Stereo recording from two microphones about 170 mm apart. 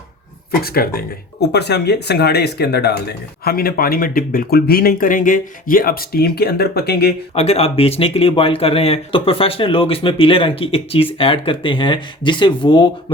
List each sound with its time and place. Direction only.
0.6 s speech: 65° left (ahead or behind)
7.3 s speech: 35° left (ahead or behind)